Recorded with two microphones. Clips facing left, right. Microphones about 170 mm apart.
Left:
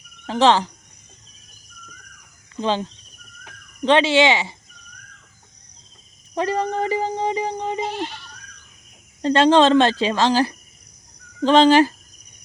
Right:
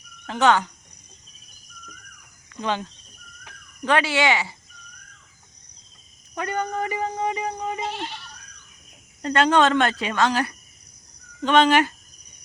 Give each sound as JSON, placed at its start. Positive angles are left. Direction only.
{"t": 0.3, "sound": "speech", "side_deg": 30}
{"t": 2.6, "sound": "speech", "side_deg": 30}
{"t": 6.3, "sound": "speech", "side_deg": 30}
{"t": 9.2, "sound": "speech", "side_deg": 30}